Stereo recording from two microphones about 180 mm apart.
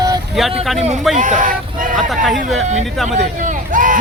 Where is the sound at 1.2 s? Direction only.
45° right (ahead or behind).